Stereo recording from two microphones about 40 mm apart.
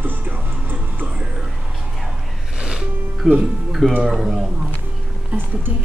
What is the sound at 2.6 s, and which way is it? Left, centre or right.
Music, centre.